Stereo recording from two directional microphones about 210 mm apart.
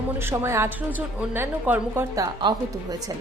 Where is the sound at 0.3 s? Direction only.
10° right (ahead or behind).